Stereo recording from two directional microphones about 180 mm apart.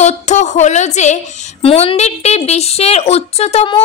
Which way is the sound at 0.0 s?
40° left (ahead or behind).